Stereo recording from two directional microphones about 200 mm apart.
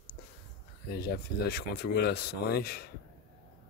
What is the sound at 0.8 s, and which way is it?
Speech, 55° left (ahead or behind).